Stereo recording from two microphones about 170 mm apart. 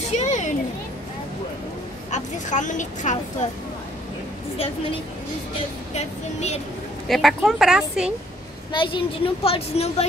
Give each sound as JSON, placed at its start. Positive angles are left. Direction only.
{"t": 0.2, "sound": "a sound", "side_deg": 45}
{"t": 2.0, "sound": "a woman's voice", "side_deg": 45}
{"t": 5.9, "sound": "a woman's voice", "side_deg": 40}
{"t": 7.1, "sound": "speech", "side_deg": 0}
{"t": 8.7, "sound": "a woman's voice", "side_deg": 30}